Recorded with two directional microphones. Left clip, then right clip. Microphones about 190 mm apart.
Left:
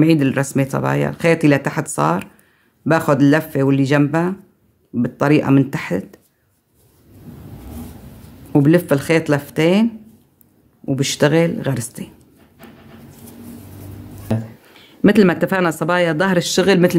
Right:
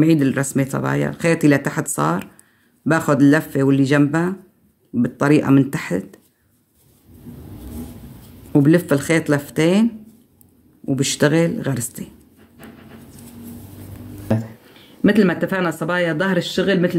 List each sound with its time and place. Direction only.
0.0 s speech: 15° left (ahead or behind)
8.5 s speech: 15° left (ahead or behind)
10.9 s speech: 15° left (ahead or behind)
14.3 s speech: centre (ahead or behind)
14.8 s speech: 35° left (ahead or behind)